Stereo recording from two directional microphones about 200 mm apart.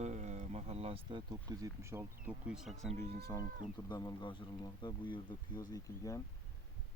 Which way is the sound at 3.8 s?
20° left (ahead or behind).